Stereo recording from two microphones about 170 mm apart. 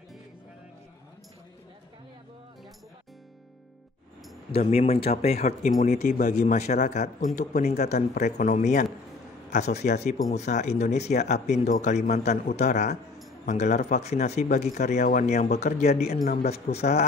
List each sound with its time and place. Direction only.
4.5 s a man's voice: 35° left (ahead or behind)